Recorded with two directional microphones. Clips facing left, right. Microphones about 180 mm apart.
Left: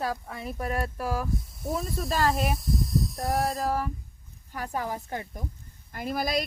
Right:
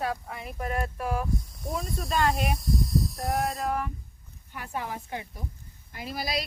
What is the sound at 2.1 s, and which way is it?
Speech, 35° left (ahead or behind).